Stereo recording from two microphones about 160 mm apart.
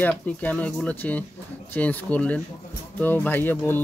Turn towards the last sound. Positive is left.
turn(degrees=15)  # may be behind; listen again after turning